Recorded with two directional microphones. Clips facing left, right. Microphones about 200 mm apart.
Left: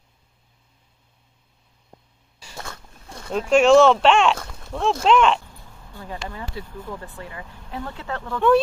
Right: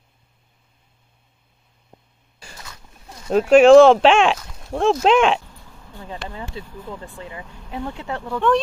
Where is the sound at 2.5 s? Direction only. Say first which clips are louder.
Left 7 dB; 60° left (ahead or behind).